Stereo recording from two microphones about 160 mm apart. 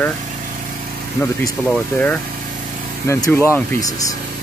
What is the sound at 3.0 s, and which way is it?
Speech, 15° left (ahead or behind).